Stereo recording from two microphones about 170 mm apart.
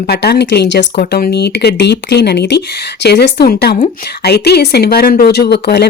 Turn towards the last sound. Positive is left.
turn(degrees=75)  # may be behind; listen again after turning